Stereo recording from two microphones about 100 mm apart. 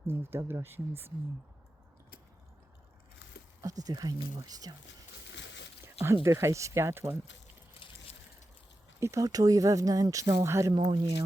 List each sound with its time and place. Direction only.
0.1 s speech: 25° right (ahead or behind)
3.6 s speech: 35° right (ahead or behind)
5.8 s a sound: 25° right (ahead or behind)
6.2 s speech: 30° right (ahead or behind)
7.8 s a sound: 75° left (ahead or behind)
9.0 s speech: 30° right (ahead or behind)
10.7 s speech: 45° right (ahead or behind)